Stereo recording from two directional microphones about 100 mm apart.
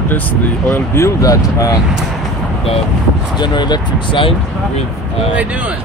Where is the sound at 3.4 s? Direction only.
45° left (ahead or behind).